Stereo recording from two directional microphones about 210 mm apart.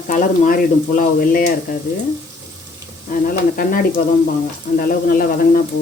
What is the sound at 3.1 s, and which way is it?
A man's voice, 40° left (ahead or behind).